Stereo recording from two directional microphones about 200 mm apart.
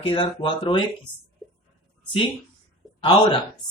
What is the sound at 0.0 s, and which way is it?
Speech, 25° left (ahead or behind).